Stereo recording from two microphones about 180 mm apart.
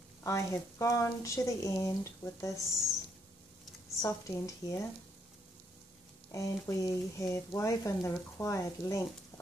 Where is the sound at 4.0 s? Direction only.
15° left (ahead or behind).